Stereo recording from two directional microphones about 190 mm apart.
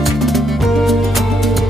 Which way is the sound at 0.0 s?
Centre (ahead or behind).